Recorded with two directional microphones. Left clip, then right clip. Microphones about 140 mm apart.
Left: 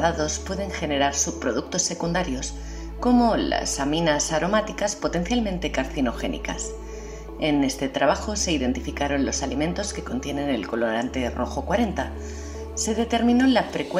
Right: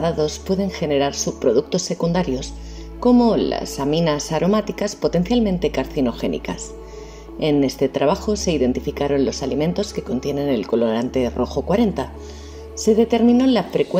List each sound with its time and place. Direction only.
0.0 s speech: 30° right (ahead or behind)
7.3 s speech: 35° right (ahead or behind)